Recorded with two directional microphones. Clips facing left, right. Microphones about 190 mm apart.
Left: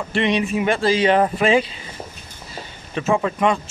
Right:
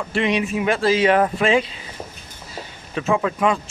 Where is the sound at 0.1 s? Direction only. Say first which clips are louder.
Left 1 dB; 5° right (ahead or behind).